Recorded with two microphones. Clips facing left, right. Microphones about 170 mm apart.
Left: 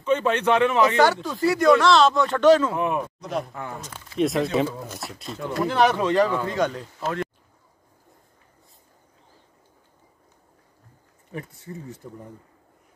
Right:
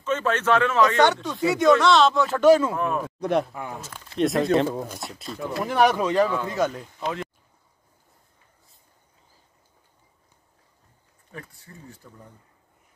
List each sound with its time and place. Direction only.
0.0 s speech: 15° left (ahead or behind)
0.9 s speech: centre (ahead or behind)
2.7 s speech: 15° left (ahead or behind)
3.2 s speech: 60° right (ahead or behind)
3.7 s speech: 5° right (ahead or behind)
11.3 s speech: 20° left (ahead or behind)